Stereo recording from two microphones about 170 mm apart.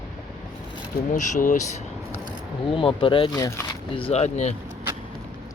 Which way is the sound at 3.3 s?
15° left (ahead or behind).